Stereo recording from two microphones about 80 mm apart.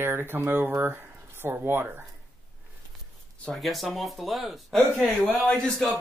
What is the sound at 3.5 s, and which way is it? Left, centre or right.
Speech, centre.